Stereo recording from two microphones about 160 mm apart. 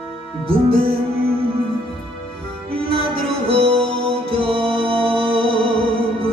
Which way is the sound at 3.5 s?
35° right (ahead or behind).